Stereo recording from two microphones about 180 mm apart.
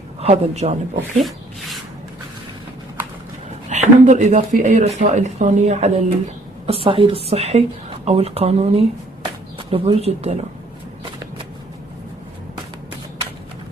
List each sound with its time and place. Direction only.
0.2 s speech: 35° right (ahead or behind)
3.7 s speech: 40° right (ahead or behind)